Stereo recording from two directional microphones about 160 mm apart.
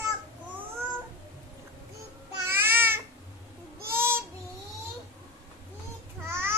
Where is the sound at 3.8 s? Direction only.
15° right (ahead or behind).